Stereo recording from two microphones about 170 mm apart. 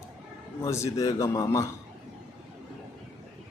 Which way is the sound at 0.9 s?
20° left (ahead or behind).